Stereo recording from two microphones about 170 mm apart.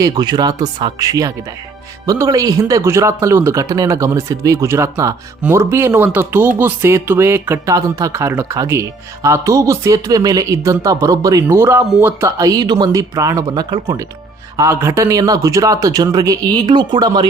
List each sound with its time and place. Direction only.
0.0 s speech: 25° right (ahead or behind)